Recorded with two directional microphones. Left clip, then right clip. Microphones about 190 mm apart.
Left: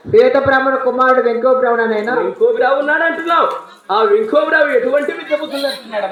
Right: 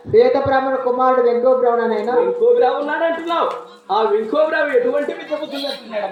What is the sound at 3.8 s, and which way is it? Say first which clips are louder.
Speech: left 4 dB; 20° left (ahead or behind).